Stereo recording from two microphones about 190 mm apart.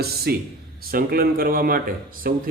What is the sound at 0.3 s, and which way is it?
Speech, 55° right (ahead or behind).